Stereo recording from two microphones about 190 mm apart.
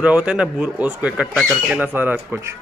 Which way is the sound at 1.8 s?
10° right (ahead or behind).